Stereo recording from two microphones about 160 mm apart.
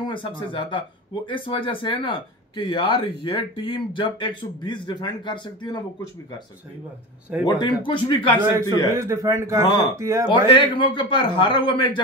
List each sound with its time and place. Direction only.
0.0 s speech: 30° left (ahead or behind)
7.4 s speech: 30° left (ahead or behind)
8.4 s speech: 15° right (ahead or behind)
10.3 s speech: 30° left (ahead or behind)